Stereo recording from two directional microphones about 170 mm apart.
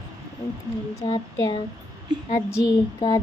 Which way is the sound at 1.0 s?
25° left (ahead or behind).